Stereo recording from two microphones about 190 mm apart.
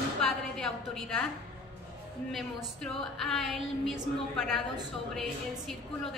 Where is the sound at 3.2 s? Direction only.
Centre (ahead or behind).